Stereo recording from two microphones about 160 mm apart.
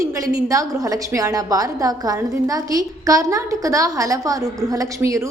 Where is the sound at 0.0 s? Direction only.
20° right (ahead or behind).